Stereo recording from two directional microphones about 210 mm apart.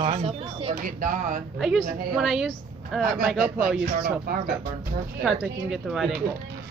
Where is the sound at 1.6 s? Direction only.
Centre (ahead or behind).